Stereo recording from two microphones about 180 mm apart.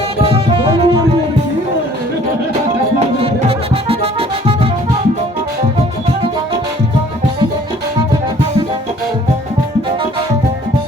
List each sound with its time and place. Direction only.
0.2 s music: 30° right (ahead or behind)
3.8 s music: 35° right (ahead or behind)